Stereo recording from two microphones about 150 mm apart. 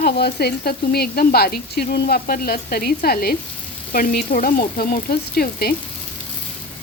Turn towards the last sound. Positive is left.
turn(degrees=90)